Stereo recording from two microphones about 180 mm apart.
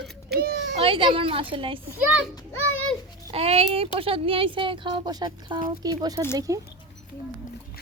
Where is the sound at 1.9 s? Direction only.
10° right (ahead or behind).